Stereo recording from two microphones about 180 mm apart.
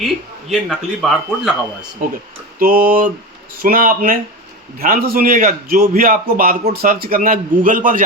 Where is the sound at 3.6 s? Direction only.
50° right (ahead or behind).